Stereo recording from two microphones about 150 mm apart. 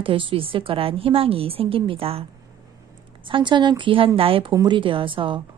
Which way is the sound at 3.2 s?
35° right (ahead or behind).